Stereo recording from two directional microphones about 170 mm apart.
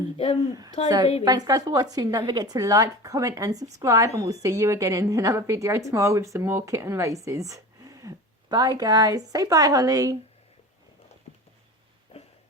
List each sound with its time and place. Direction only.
0.5 s a woman's voice: 20° right (ahead or behind)